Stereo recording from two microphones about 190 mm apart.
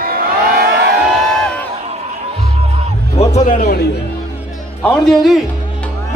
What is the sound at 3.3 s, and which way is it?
Speech, 40° left (ahead or behind).